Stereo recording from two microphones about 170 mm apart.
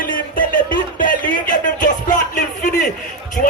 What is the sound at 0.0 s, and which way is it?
Music, 55° left (ahead or behind).